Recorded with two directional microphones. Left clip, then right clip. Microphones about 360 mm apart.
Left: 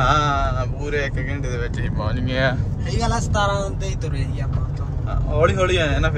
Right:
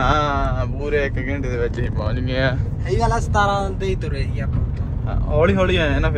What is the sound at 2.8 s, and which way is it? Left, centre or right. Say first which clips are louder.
Speech: right 4 dB; centre.